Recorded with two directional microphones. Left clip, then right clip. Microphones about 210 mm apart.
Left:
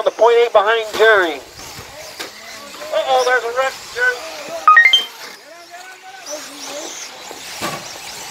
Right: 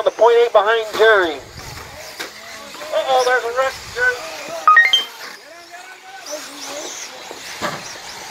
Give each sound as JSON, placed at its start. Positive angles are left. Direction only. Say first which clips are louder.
{"t": 0.0, "sound": "speech", "louder": "even", "side_deg": -35}
{"t": 2.9, "sound": "a sound", "louder": "left 1 dB", "side_deg": -40}
{"t": 6.2, "sound": "vehicle", "louder": "even", "side_deg": -20}